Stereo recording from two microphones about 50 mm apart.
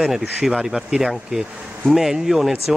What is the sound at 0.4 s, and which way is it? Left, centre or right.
Speech, centre.